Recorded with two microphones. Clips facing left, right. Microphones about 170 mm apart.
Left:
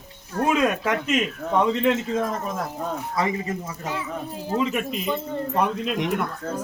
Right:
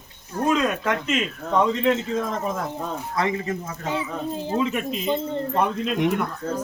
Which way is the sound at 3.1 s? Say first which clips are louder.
Right 2 dB; 5° left (ahead or behind).